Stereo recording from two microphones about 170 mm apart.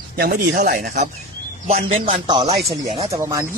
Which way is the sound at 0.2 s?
65° right (ahead or behind).